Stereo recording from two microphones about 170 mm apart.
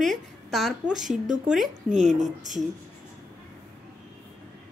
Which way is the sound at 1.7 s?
45° right (ahead or behind).